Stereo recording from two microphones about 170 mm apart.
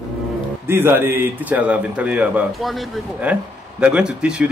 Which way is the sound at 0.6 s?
15° right (ahead or behind).